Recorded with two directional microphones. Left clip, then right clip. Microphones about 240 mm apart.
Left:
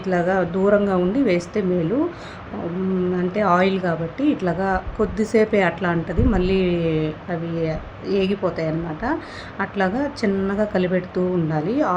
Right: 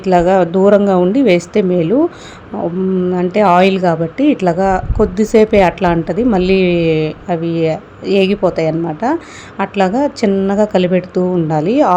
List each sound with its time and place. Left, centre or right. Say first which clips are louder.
0.0 s a woman's voice: right 10 dB; right
3.2 s a woman's voice: right 9 dB; right